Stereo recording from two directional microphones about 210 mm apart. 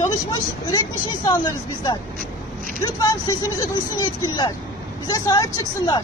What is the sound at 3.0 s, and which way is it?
Speech, 15° left (ahead or behind).